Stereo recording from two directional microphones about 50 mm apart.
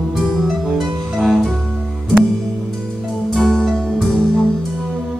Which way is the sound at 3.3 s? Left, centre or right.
Centre.